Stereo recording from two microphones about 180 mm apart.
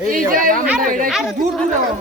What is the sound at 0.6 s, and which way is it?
Speech, 5° right (ahead or behind).